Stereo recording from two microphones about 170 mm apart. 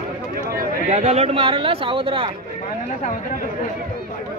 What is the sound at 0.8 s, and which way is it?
Speech, 40° right (ahead or behind).